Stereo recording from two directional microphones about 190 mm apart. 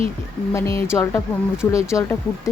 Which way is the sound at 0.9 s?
15° left (ahead or behind).